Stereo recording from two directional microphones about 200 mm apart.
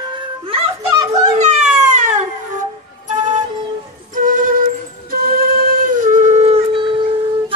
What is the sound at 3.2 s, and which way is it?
Music, 40° right (ahead or behind).